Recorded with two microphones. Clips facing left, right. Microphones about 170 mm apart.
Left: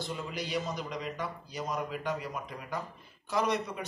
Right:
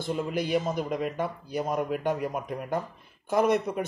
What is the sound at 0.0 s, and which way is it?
A man's voice, 50° right (ahead or behind).